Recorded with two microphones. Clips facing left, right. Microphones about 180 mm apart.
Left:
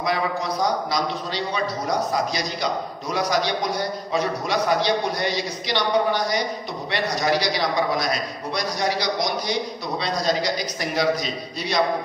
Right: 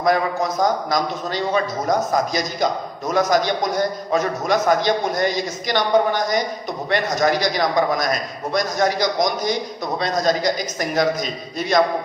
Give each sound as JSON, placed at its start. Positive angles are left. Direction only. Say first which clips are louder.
{"t": 0.0, "sound": "a man's voice", "louder": "right 5 dB", "side_deg": -45}